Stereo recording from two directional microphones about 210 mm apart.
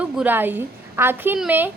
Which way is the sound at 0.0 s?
5° right (ahead or behind).